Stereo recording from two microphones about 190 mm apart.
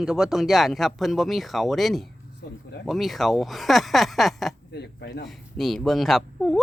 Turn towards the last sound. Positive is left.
turn(degrees=0)  # may be behind; listen again after turning